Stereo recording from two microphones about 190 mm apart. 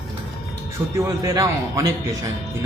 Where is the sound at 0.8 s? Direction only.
10° right (ahead or behind).